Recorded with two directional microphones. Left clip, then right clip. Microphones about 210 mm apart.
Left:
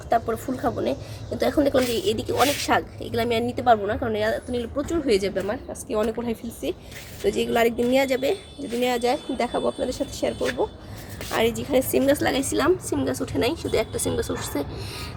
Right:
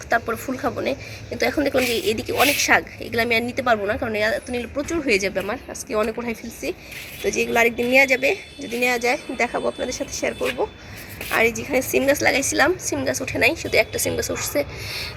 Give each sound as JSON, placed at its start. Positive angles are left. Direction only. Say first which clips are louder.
{"t": 0.1, "sound": "speech", "louder": "right 1 dB", "side_deg": 5}
{"t": 2.2, "sound": "speech", "louder": "right 5 dB", "side_deg": 0}